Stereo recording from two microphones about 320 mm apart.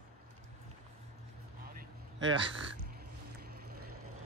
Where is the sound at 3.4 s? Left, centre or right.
Right.